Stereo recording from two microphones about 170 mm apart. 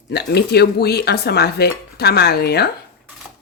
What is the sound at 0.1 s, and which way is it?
Cutlery, 75° left (ahead or behind).